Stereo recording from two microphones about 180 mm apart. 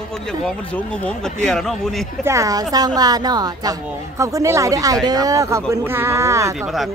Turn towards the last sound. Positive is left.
turn(degrees=-15)  # may be behind; listen again after turning